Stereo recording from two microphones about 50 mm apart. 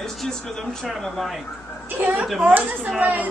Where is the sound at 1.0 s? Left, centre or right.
Centre.